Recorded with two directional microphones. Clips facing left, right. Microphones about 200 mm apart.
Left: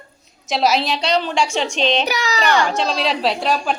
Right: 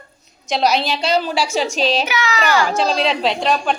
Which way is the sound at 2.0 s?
35° left (ahead or behind).